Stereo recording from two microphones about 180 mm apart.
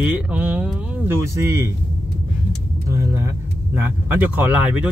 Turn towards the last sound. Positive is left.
turn(degrees=-10)  # may be behind; listen again after turning